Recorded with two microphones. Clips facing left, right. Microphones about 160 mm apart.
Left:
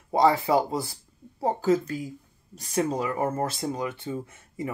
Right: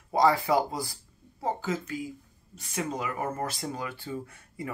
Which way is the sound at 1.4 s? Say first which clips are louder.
Left 7 dB; 40° left (ahead or behind).